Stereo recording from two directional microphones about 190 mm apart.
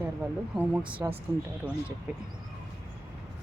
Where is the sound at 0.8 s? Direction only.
25° right (ahead or behind).